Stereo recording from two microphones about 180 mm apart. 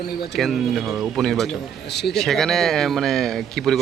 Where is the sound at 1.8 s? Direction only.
70° left (ahead or behind).